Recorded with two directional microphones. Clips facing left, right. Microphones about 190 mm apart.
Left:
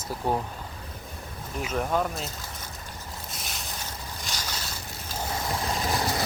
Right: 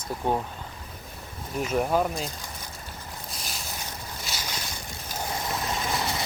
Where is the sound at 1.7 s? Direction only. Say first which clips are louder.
Right 2 dB; 10° right (ahead or behind).